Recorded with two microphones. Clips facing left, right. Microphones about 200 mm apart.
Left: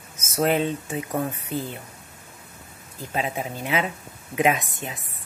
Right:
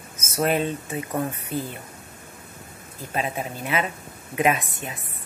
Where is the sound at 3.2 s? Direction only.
15° left (ahead or behind).